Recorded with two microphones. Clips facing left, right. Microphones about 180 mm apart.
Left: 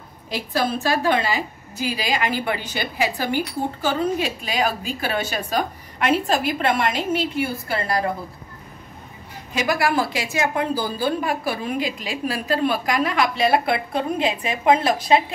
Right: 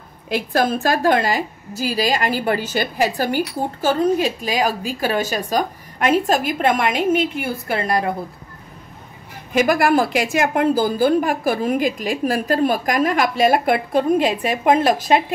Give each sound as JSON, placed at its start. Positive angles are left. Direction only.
{"t": 0.3, "sound": "a woman's voice", "side_deg": -50}
{"t": 9.5, "sound": "a woman's voice", "side_deg": -50}